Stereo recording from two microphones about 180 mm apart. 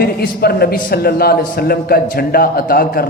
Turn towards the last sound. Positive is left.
turn(degrees=55)  # may be behind; listen again after turning